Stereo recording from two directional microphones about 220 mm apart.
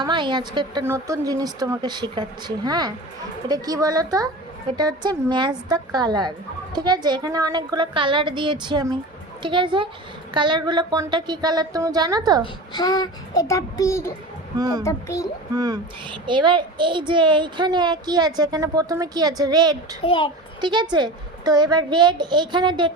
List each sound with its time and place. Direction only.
0.0 s a child's voice: 20° right (ahead or behind)
12.7 s child singing: 20° left (ahead or behind)
14.6 s speech: 15° right (ahead or behind)
14.8 s child singing: 15° left (ahead or behind)
15.5 s a child's voice: 15° right (ahead or behind)
20.1 s a child's voice: 25° left (ahead or behind)
20.6 s a child's voice: 20° right (ahead or behind)